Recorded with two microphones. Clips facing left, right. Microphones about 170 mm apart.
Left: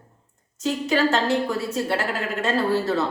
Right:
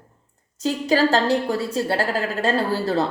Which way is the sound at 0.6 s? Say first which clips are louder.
Right 2 dB; 30° right (ahead or behind).